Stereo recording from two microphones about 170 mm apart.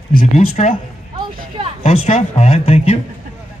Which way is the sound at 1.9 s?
40° left (ahead or behind).